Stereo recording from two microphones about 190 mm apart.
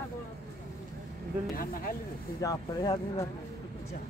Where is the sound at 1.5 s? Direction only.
50° left (ahead or behind).